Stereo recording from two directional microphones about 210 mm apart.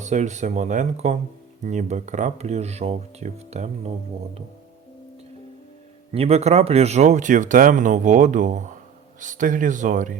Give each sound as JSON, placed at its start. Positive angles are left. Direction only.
{"t": 0.0, "sound": "speech", "side_deg": -35}
{"t": 6.1, "sound": "speech", "side_deg": -30}